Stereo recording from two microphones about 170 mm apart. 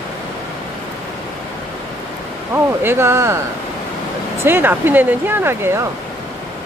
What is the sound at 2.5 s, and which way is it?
Speech, 15° right (ahead or behind).